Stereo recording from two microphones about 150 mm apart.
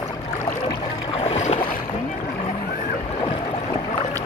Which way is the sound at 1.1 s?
45° left (ahead or behind).